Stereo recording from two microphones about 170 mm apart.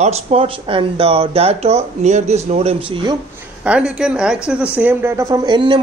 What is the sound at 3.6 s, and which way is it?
Speech, 5° right (ahead or behind).